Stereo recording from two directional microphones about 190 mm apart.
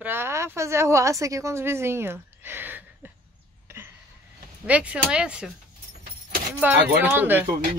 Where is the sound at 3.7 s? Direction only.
15° right (ahead or behind).